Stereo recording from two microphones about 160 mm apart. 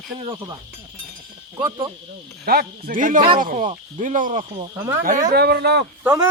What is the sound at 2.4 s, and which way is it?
A man's voice, 70° right (ahead or behind).